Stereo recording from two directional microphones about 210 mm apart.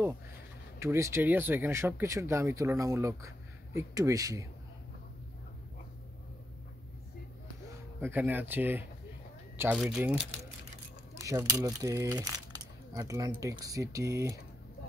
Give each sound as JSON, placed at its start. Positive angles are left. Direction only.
{"t": 0.7, "sound": "speech", "side_deg": -15}
{"t": 8.0, "sound": "speech", "side_deg": -10}
{"t": 11.1, "sound": "speech", "side_deg": -15}